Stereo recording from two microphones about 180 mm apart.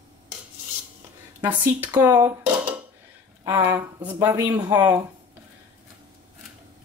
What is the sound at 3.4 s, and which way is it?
Speech, 20° right (ahead or behind).